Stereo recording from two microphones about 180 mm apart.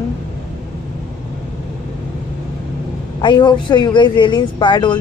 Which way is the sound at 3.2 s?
25° left (ahead or behind).